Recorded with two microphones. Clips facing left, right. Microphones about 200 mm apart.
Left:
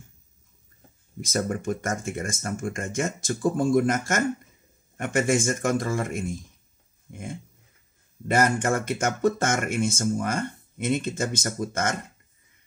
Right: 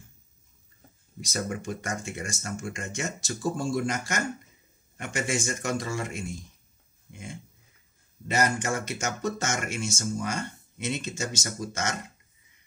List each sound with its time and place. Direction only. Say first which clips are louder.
1.2 s speech: left 5 dB; 50° left (ahead or behind)
7.1 s dog: left 5 dB; 50° left (ahead or behind)
8.3 s speech: left 4 dB; 50° left (ahead or behind)